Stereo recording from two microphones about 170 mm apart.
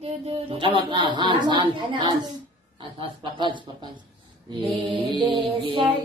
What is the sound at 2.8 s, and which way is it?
Speech, 30° right (ahead or behind).